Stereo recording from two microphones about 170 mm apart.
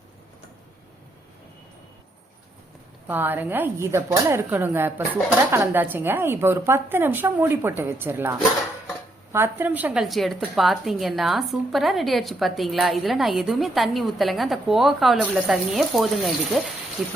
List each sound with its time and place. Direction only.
3.1 s a woman's voice: 10° right (ahead or behind)